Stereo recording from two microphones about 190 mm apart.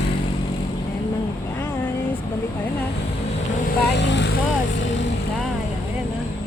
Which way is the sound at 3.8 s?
65° left (ahead or behind).